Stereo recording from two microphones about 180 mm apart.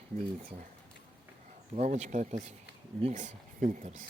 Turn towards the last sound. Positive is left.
turn(degrees=-45)  # may be behind; listen again after turning